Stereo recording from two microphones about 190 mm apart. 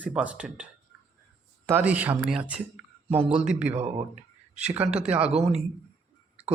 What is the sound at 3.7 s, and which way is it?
Speech, 30° right (ahead or behind).